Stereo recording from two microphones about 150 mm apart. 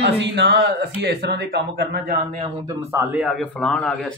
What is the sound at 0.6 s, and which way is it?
Speech, 90° right.